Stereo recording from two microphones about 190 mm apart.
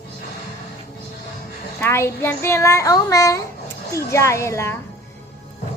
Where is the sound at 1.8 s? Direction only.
15° left (ahead or behind).